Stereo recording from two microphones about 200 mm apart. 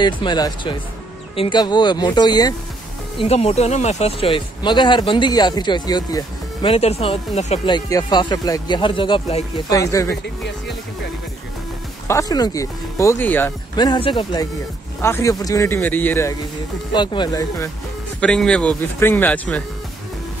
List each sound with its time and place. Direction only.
0.0 s speech: 20° left (ahead or behind)
3.2 s speech: 30° left (ahead or behind)
7.7 s speech: 20° left (ahead or behind)
12.1 s speech: 15° left (ahead or behind)
13.7 s speech: 25° left (ahead or behind)
16.9 s speech: 20° left (ahead or behind)
18.2 s speech: 5° left (ahead or behind)